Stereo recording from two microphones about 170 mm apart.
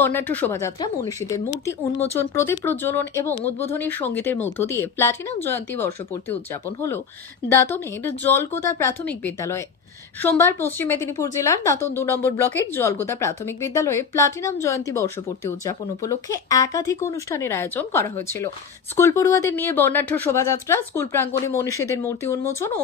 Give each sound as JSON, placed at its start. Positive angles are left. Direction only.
{"t": 0.0, "sound": "a woman's voice", "side_deg": 10}
{"t": 7.4, "sound": "a woman's voice", "side_deg": 15}